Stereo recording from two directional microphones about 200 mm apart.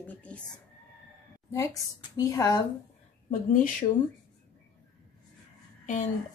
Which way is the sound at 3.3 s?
40° left (ahead or behind).